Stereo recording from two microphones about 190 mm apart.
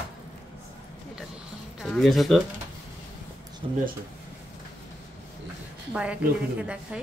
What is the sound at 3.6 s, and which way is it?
Speech, 30° right (ahead or behind).